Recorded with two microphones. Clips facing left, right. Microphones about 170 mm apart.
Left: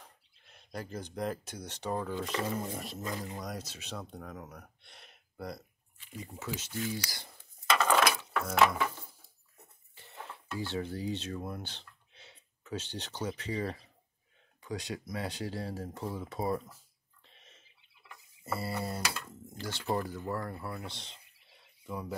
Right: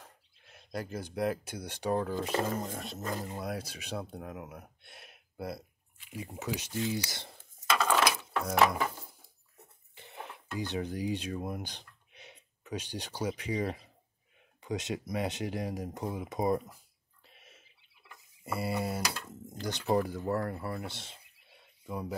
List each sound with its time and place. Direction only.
0.7 s speech: 5° right (ahead or behind)
2.0 s a sound: 35° right (ahead or behind)
2.3 s speech: 45° right (ahead or behind)
2.6 s speech: centre (ahead or behind)
3.0 s speech: 45° right (ahead or behind)
3.3 s speech: 10° right (ahead or behind)
8.5 s a sound: 35° right (ahead or behind)
9.9 s speech: 15° right (ahead or behind)